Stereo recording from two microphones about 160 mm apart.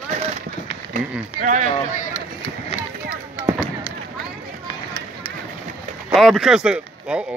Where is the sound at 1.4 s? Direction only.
55° right (ahead or behind).